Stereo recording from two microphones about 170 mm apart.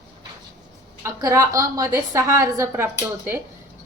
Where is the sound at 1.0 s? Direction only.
15° right (ahead or behind).